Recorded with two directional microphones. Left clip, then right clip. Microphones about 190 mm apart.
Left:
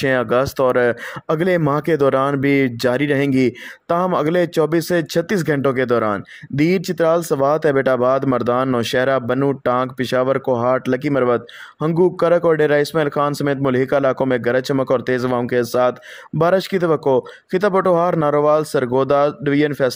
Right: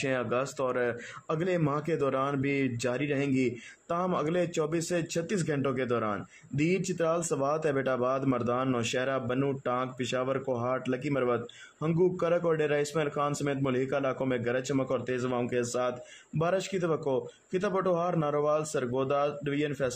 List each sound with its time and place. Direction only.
0.0 s speech: 40° left (ahead or behind)